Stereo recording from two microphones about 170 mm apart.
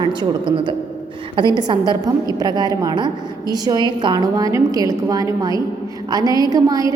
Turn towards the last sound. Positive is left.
turn(degrees=-20)  # may be behind; listen again after turning